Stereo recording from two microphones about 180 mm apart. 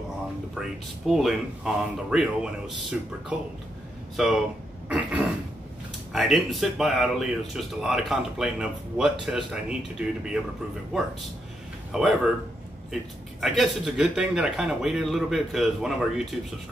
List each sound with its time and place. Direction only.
0.6 s a man's voice: centre (ahead or behind)
4.8 s throat clearing: 10° right (ahead or behind)
6.1 s a man's voice: centre (ahead or behind)
11.9 s a man's voice: 5° right (ahead or behind)
13.4 s a man's voice: centre (ahead or behind)